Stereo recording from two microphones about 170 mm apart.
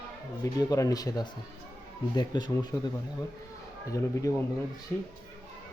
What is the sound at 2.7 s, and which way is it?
Speech, 15° left (ahead or behind).